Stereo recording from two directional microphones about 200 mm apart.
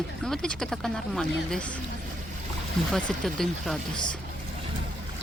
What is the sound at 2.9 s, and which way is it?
Speech, centre (ahead or behind).